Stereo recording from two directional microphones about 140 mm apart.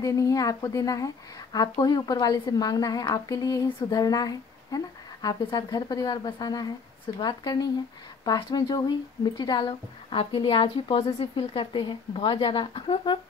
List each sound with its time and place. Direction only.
0.0 s a woman's voice: 25° left (ahead or behind)